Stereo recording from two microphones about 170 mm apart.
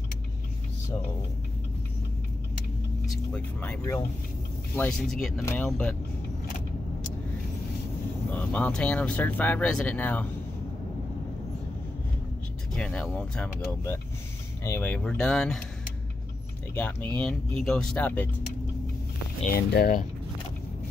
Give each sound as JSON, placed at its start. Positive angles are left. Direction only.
{"t": 3.3, "sound": "speech", "side_deg": 10}
{"t": 8.3, "sound": "speech", "side_deg": 10}
{"t": 12.7, "sound": "speech", "side_deg": 5}
{"t": 16.7, "sound": "speech", "side_deg": 10}
{"t": 19.4, "sound": "speech", "side_deg": 65}